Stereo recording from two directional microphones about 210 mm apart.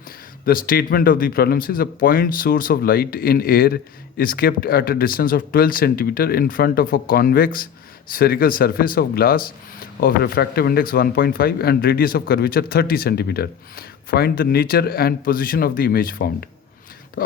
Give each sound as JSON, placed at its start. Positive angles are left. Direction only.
{"t": 0.4, "sound": "speech", "side_deg": 45}